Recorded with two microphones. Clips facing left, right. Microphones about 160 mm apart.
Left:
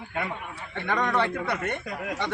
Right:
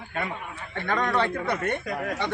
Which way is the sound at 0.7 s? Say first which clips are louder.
Even; 15° left (ahead or behind).